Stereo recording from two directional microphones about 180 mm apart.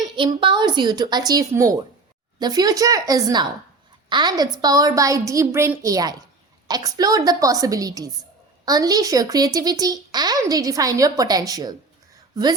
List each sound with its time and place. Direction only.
0.0 s speech: 25° right (ahead or behind)